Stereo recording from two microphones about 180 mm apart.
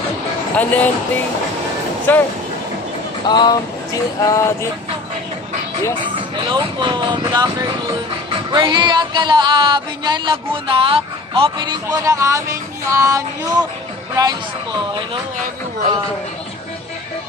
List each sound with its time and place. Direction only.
0.6 s speech: 10° left (ahead or behind)
3.3 s a sound: 25° left (ahead or behind)
6.3 s music: 25° right (ahead or behind)
8.5 s music: 25° right (ahead or behind)